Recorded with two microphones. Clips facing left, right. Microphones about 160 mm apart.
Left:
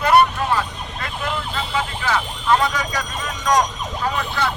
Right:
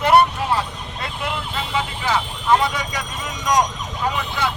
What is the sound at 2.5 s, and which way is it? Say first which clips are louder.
Speech: even; 20° right (ahead or behind).